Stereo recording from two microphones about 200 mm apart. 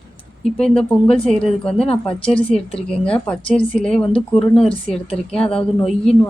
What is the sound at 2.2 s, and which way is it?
Speech, 30° left (ahead or behind).